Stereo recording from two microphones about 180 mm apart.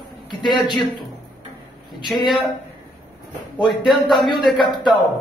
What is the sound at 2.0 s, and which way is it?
Speech, centre (ahead or behind).